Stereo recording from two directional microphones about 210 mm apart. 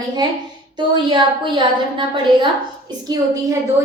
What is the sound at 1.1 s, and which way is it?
Speech, 25° right (ahead or behind).